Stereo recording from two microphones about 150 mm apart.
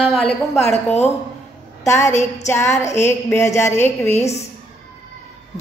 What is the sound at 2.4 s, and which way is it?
A woman's voice, 20° left (ahead or behind).